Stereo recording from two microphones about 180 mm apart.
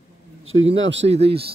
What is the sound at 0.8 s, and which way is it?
Speech, 85° right.